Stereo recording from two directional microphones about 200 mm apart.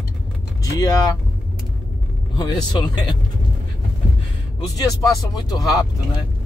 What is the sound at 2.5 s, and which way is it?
Speech, 20° left (ahead or behind).